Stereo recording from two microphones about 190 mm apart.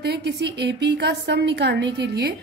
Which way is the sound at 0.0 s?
60° right (ahead or behind).